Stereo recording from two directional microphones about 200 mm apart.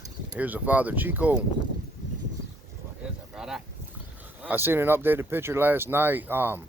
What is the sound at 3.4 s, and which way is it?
Boat, centre (ahead or behind).